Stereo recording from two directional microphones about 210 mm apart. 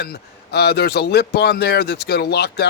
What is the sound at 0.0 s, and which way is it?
A man's voice, 50° left (ahead or behind).